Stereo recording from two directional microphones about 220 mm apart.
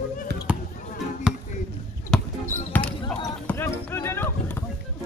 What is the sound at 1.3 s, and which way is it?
Chop, 5° right (ahead or behind).